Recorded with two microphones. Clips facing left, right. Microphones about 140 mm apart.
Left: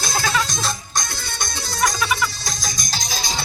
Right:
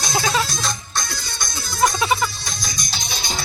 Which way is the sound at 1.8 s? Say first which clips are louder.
Right 3 dB; 30° right (ahead or behind).